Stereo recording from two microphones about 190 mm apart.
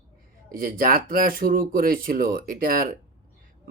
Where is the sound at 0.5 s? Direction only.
50° right (ahead or behind).